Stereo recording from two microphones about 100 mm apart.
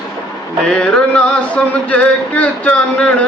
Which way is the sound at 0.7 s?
10° left (ahead or behind).